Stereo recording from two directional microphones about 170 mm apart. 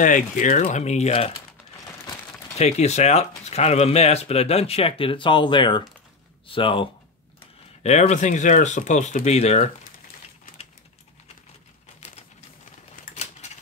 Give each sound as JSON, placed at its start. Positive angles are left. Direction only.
{"t": 0.0, "sound": "speech", "side_deg": 50}
{"t": 2.5, "sound": "speech", "side_deg": 40}
{"t": 7.8, "sound": "speech", "side_deg": 40}
{"t": 13.1, "sound": "typewriter", "side_deg": 40}